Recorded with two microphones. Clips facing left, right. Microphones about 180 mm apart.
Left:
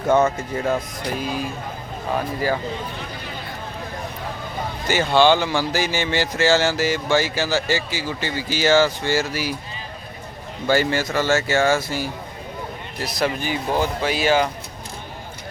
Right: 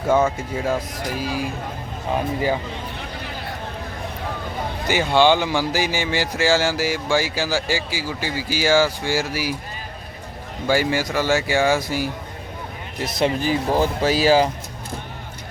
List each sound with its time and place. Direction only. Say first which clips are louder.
0.1 s speech: left 1 dB; 10° right (ahead or behind)
4.9 s speech: even; 15° right (ahead or behind)
10.7 s speech: even; 10° right (ahead or behind)
13.0 s speech: right 3 dB; 25° right (ahead or behind)